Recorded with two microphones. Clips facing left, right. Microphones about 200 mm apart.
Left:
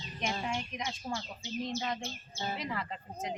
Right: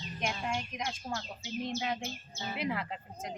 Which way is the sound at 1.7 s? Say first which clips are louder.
Right 2 dB; 10° right (ahead or behind).